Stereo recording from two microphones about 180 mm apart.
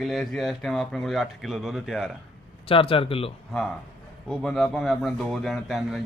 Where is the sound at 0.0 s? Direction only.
Centre (ahead or behind).